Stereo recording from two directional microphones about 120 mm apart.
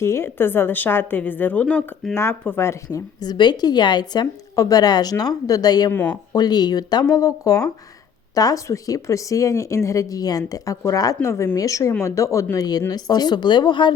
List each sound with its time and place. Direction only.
0.0 s speech: 20° left (ahead or behind)
3.2 s speech: 35° left (ahead or behind)
5.9 s speech: 15° left (ahead or behind)
6.3 s speech: 35° left (ahead or behind)